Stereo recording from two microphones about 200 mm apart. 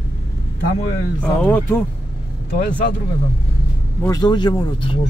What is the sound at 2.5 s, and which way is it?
Speech, 50° left (ahead or behind).